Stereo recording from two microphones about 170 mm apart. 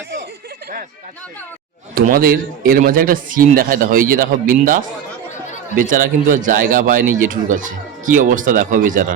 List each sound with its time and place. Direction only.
2.0 s a man's voice: 55° right (ahead or behind)